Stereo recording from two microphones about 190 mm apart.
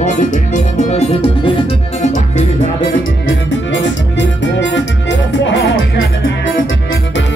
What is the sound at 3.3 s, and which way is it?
Music, 75° left (ahead or behind).